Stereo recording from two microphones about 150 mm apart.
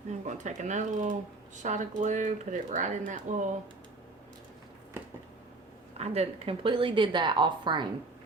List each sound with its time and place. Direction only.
0.1 s speech: 50° right (ahead or behind)
6.0 s a woman's voice: 40° right (ahead or behind)